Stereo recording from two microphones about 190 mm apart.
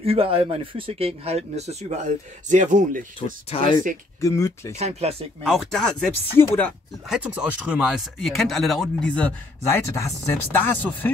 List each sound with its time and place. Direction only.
0.0 s speech: 30° right (ahead or behind)
3.4 s speech: 25° left (ahead or behind)
4.7 s speech: 35° right (ahead or behind)
5.4 s speech: centre (ahead or behind)
7.1 s speech: 5° right (ahead or behind)
9.8 s speech: 15° left (ahead or behind)